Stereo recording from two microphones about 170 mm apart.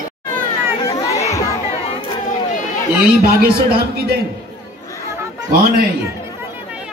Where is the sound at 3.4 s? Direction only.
65° right (ahead or behind).